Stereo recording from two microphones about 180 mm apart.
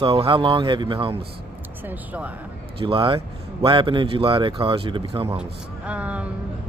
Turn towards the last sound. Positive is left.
turn(degrees=-5)  # may be behind; listen again after turning